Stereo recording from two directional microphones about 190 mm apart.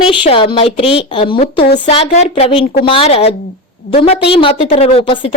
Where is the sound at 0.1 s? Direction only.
25° left (ahead or behind).